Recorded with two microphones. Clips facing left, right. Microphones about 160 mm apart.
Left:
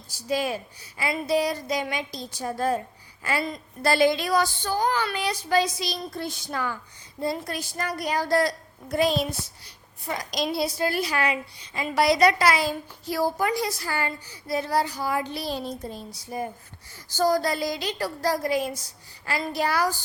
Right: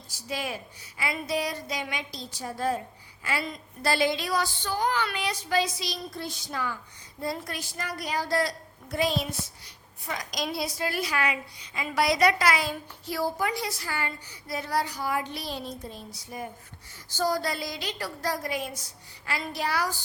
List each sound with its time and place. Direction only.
0.3 s a woman's voice: 40° left (ahead or behind)
2.4 s speech: 50° left (ahead or behind)
7.2 s a woman's voice: 25° left (ahead or behind)
7.5 s speech: 40° left (ahead or behind)
9.6 s a woman's voice: 30° left (ahead or behind)
17.1 s a woman's voice: 45° left (ahead or behind)